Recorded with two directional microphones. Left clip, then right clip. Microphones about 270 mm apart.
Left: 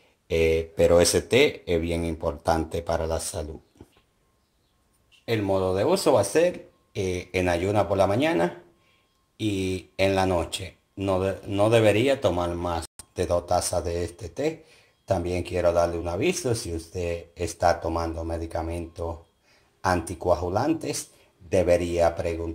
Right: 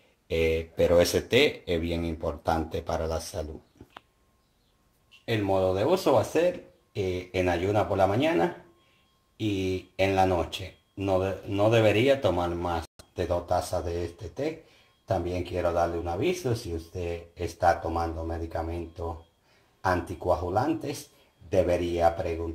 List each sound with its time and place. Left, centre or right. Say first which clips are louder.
0.3 s a man's voice: left 4 dB; left
3.8 s dog: left 2 dB; centre
5.2 s a man's voice: left 1 dB; centre